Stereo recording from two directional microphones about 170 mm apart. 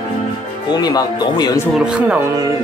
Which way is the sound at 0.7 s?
25° left (ahead or behind).